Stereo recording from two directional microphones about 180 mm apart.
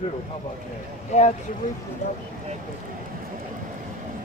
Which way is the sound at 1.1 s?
40° left (ahead or behind).